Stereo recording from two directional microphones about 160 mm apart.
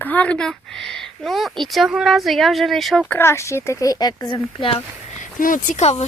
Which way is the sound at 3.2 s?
15° left (ahead or behind).